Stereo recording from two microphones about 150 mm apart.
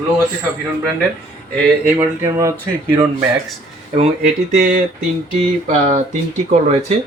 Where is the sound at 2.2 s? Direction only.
20° right (ahead or behind).